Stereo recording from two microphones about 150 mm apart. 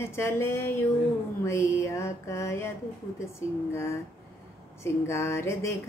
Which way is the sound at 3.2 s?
15° left (ahead or behind).